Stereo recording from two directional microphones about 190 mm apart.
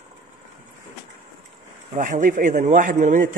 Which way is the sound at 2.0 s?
40° right (ahead or behind).